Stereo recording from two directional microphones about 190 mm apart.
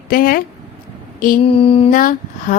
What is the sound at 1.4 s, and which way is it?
Mantra, 30° left (ahead or behind).